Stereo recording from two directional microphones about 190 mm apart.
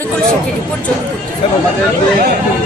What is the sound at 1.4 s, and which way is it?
Speech, 30° left (ahead or behind).